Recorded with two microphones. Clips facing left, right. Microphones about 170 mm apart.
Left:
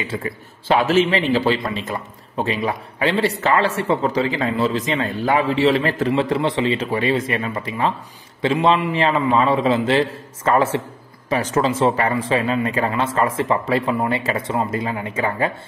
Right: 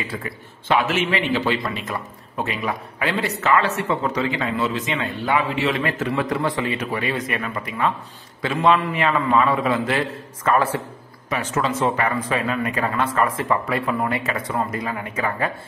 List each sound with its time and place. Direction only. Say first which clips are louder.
0.0 s a man's voice: left 4 dB; 30° left (ahead or behind)
11.2 s speech: left 4 dB; 35° left (ahead or behind)